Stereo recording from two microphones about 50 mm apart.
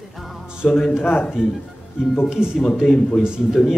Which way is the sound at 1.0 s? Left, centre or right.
Left.